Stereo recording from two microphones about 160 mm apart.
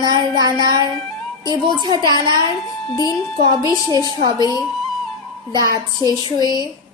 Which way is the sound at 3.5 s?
25° right (ahead or behind).